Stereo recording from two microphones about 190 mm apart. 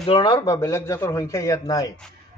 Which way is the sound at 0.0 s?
30° left (ahead or behind).